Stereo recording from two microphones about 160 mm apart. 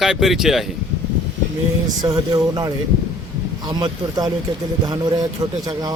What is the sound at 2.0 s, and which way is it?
A man's voice, 25° right (ahead or behind).